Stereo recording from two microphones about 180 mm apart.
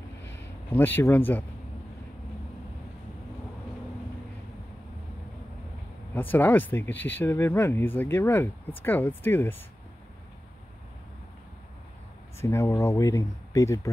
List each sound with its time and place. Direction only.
0.7 s speech: 10° left (ahead or behind)
6.1 s speech: 10° left (ahead or behind)
12.4 s speech: 15° left (ahead or behind)